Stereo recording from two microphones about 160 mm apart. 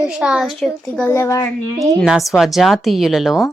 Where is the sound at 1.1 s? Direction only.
20° left (ahead or behind).